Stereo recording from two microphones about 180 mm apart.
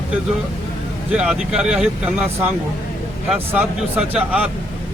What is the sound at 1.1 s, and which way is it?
Speech, 5° right (ahead or behind).